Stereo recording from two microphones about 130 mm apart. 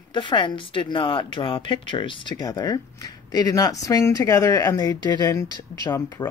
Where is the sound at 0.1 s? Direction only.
40° left (ahead or behind).